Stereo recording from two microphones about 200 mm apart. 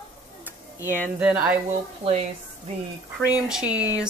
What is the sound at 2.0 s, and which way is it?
Speech, 30° right (ahead or behind).